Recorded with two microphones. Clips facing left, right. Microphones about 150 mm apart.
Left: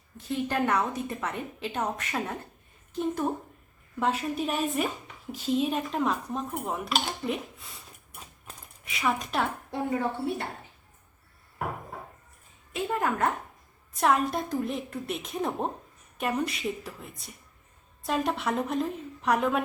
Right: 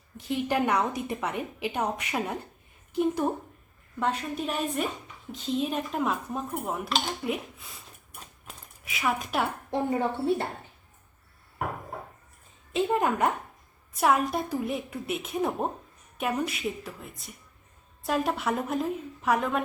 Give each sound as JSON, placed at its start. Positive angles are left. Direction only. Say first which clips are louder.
{"t": 0.2, "sound": "a woman's voice", "louder": "right 1 dB", "side_deg": -15}
{"t": 4.0, "sound": "speech", "louder": "left 1 dB", "side_deg": 5}
{"t": 8.1, "sound": "a sound", "louder": "even", "side_deg": 5}
{"t": 8.8, "sound": "speech", "louder": "even", "side_deg": 0}
{"t": 9.7, "sound": "speech", "louder": "right 2 dB", "side_deg": -25}
{"t": 12.7, "sound": "a woman's voice", "louder": "right 3 dB", "side_deg": -20}
{"t": 14.0, "sound": "speech", "louder": "right 1 dB", "side_deg": -5}